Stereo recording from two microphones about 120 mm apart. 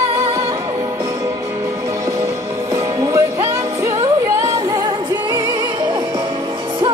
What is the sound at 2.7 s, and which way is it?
Music, 30° right (ahead or behind).